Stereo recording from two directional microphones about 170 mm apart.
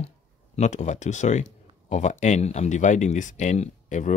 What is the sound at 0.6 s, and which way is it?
Speech, 45° left (ahead or behind).